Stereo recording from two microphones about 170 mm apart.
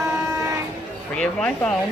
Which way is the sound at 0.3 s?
20° right (ahead or behind).